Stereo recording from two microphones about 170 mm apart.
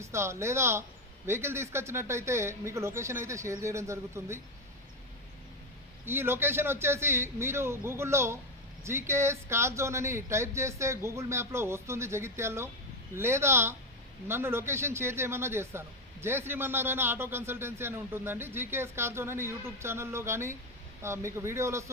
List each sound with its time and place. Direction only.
0.0 s a man's voice: 15° right (ahead or behind)
6.1 s a man's voice: 15° right (ahead or behind)